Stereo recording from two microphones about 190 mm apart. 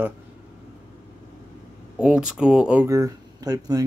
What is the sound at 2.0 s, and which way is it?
Speech, 5° right (ahead or behind).